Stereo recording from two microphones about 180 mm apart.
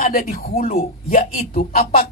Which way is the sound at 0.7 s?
35° left (ahead or behind).